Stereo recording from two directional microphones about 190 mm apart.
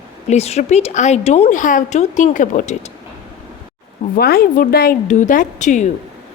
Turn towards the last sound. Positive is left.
turn(degrees=40)  # may be behind; listen again after turning